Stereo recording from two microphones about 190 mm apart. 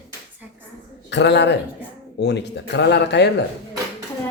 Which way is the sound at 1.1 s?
65° left (ahead or behind).